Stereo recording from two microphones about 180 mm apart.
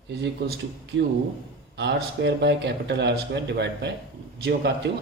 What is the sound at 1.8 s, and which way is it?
Speech, 75° right (ahead or behind).